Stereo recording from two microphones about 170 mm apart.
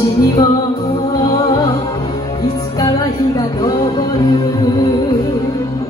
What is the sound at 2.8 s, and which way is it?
Music, 20° left (ahead or behind).